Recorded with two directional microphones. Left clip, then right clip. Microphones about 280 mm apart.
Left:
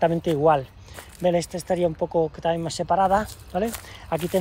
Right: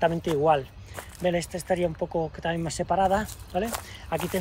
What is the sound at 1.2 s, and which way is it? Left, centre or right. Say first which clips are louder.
Speech: left 4 dB; centre.